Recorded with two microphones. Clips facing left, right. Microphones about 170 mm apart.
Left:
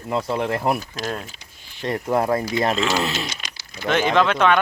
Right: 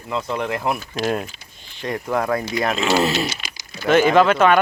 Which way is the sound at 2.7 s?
5° right (ahead or behind).